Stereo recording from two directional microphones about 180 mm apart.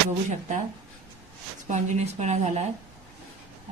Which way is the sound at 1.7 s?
40° right (ahead or behind).